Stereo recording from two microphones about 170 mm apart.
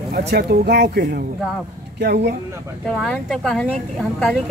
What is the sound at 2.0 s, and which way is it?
Speech, 85° right.